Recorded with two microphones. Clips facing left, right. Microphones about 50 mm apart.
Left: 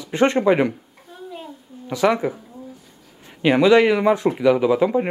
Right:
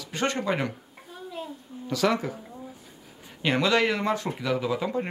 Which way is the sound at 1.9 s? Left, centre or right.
Centre.